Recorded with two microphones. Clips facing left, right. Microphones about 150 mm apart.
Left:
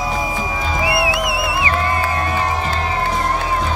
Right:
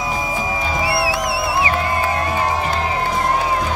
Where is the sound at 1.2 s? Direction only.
30° right (ahead or behind).